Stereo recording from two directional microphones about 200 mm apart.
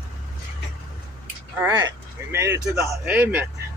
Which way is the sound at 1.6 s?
15° right (ahead or behind).